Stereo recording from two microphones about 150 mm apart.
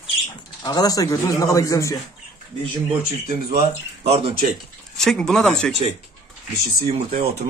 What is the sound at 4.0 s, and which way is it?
Speech, 40° right (ahead or behind).